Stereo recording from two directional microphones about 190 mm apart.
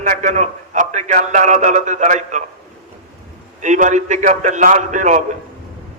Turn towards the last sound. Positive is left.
turn(degrees=-40)  # may be behind; listen again after turning